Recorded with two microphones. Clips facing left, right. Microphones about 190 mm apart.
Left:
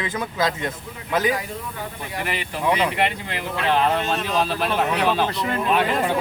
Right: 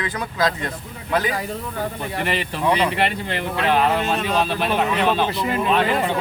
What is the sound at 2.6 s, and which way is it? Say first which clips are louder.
Speech: right 1 dB; 5° left (ahead or behind).